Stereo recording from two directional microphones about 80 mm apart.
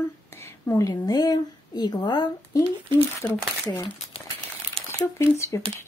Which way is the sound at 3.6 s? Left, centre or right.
Left.